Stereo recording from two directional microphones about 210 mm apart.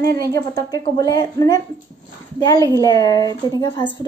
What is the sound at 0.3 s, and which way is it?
A woman's voice, 15° left (ahead or behind).